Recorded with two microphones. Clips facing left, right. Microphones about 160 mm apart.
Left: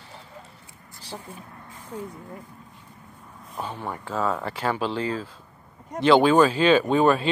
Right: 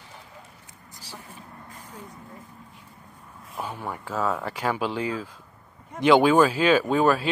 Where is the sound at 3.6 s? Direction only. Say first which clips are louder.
Left 1 dB; 10° right (ahead or behind).